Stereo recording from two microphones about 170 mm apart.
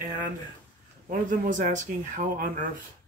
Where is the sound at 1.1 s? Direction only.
50° right (ahead or behind).